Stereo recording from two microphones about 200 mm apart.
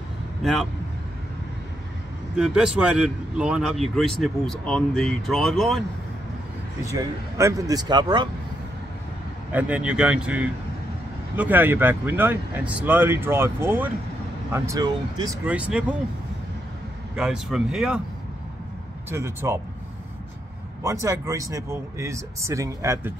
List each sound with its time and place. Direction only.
0.4 s a man's voice: centre (ahead or behind)
2.3 s a man's voice: 5° right (ahead or behind)
6.9 s speech: 15° right (ahead or behind)
9.5 s speech: 5° right (ahead or behind)
15.4 s speech: 5° right (ahead or behind)
17.1 s a man's voice: 5° right (ahead or behind)
19.0 s speech: 15° right (ahead or behind)
20.8 s speech: 15° right (ahead or behind)